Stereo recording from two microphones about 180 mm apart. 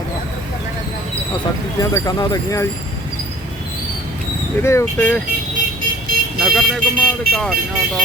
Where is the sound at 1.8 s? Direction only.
15° left (ahead or behind).